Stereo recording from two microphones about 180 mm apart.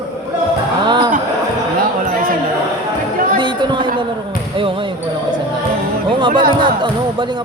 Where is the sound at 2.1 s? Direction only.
50° right (ahead or behind).